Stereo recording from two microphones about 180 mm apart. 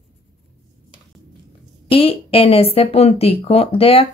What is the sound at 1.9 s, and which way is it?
Speech, 30° left (ahead or behind).